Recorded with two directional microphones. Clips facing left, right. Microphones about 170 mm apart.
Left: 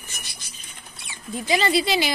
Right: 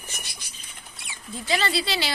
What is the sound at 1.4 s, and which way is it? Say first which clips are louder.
Speech: left 5 dB; 15° left (ahead or behind).